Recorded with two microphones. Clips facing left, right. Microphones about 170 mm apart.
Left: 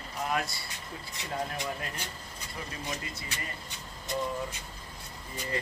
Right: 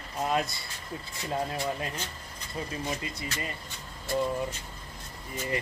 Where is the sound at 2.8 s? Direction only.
20° right (ahead or behind).